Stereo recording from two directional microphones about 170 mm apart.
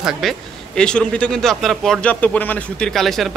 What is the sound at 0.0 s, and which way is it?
A man's voice, centre (ahead or behind).